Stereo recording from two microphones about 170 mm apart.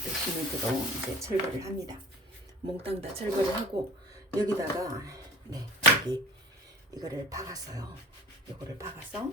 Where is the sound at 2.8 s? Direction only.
35° right (ahead or behind).